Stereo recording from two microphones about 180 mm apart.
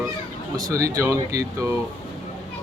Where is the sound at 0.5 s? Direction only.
20° right (ahead or behind).